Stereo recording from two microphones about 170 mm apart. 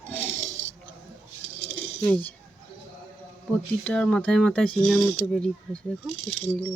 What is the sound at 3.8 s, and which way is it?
Speech, 5° left (ahead or behind).